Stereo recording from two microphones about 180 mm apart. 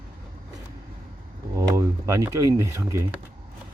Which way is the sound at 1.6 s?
15° right (ahead or behind).